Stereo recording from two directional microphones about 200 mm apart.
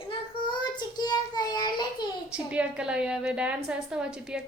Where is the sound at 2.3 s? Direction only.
5° right (ahead or behind).